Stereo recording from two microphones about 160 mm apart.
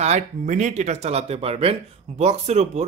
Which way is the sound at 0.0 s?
45° right (ahead or behind).